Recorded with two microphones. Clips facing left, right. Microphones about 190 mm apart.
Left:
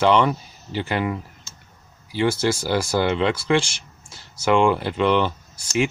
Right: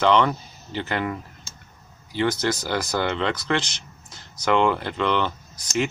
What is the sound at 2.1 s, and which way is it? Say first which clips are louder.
Speech: left 2 dB; 10° left (ahead or behind).